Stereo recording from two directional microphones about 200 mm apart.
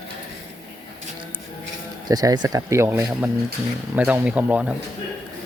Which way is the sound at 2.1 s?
20° right (ahead or behind).